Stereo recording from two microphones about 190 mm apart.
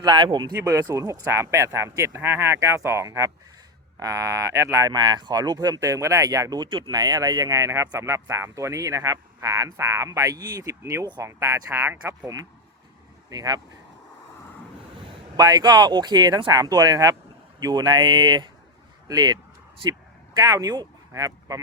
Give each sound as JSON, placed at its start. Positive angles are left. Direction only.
{"t": 0.0, "sound": "speech", "side_deg": -25}
{"t": 15.4, "sound": "speech", "side_deg": -20}